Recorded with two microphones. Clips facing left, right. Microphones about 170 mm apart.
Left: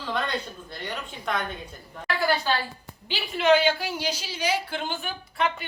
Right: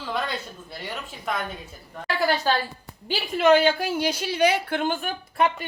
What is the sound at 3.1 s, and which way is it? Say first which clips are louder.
A woman's voice: right 2 dB; 45° right (ahead or behind).